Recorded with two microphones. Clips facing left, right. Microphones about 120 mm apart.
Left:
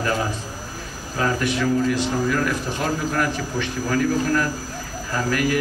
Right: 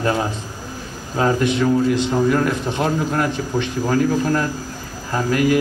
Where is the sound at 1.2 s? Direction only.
25° right (ahead or behind).